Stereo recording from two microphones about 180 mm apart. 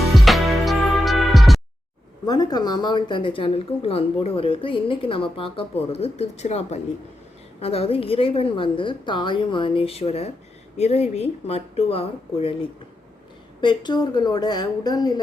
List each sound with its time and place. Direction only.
0.0 s music: centre (ahead or behind)
2.2 s speech: 20° left (ahead or behind)
13.6 s a woman's voice: 25° left (ahead or behind)